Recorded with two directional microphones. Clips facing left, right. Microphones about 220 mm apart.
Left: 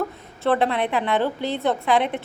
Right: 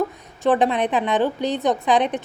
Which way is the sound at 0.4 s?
15° right (ahead or behind).